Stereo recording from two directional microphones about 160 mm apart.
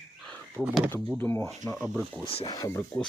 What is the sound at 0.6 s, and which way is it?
Speech, 10° right (ahead or behind).